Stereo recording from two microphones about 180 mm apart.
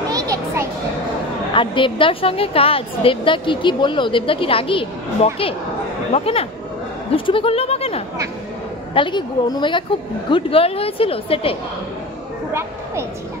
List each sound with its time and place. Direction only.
0.1 s music: 20° right (ahead or behind)
1.5 s a woman's voice: 30° left (ahead or behind)